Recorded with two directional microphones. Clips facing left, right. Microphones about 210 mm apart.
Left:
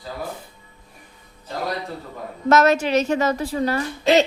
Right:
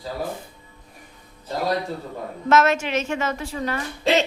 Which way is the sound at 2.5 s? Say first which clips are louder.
Left 3 dB; 40° left (ahead or behind).